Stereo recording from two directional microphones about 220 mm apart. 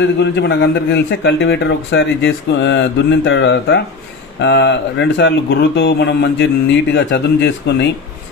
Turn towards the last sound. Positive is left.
turn(degrees=50)  # may be behind; listen again after turning